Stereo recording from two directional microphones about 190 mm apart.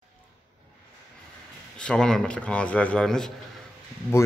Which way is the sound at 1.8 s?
5° left (ahead or behind).